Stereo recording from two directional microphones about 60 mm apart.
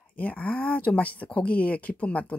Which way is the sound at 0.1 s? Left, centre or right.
Left.